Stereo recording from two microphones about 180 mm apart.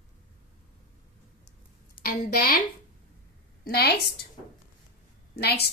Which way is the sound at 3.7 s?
65° left (ahead or behind).